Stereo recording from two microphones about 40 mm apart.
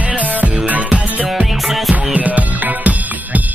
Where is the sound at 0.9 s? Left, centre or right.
Right.